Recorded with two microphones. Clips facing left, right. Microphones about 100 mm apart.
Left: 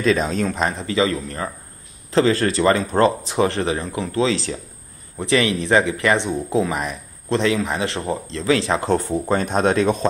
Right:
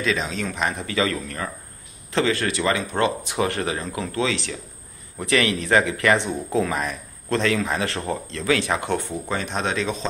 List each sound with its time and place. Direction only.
0.0 s speech: 45° left (ahead or behind)
0.5 s speech: 30° left (ahead or behind)
3.3 s speech: 25° left (ahead or behind)
9.3 s speech: 45° left (ahead or behind)